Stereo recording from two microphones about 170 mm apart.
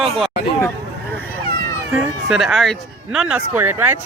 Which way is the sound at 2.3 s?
Centre (ahead or behind).